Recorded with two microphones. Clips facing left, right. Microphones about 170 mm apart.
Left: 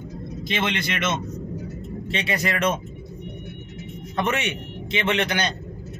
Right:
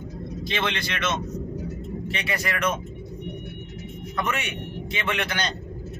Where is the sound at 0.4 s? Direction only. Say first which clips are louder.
Left 2 dB; 20° left (ahead or behind).